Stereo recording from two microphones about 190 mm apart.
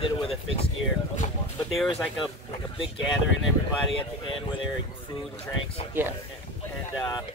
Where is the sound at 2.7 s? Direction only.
25° left (ahead or behind).